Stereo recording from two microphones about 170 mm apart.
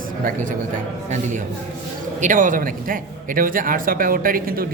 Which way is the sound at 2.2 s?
50° right (ahead or behind).